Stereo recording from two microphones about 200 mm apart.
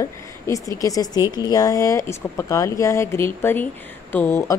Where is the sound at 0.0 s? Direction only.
15° left (ahead or behind).